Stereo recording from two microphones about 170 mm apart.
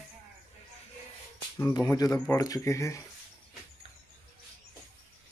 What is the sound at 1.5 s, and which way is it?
Speech, 20° left (ahead or behind).